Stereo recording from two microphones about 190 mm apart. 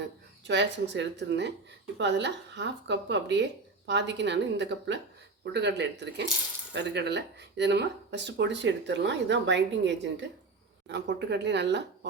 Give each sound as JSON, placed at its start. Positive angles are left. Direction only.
{"t": 0.4, "sound": "speech", "side_deg": -65}